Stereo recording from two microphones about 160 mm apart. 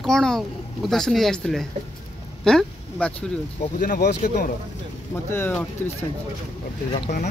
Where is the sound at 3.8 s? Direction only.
65° left (ahead or behind).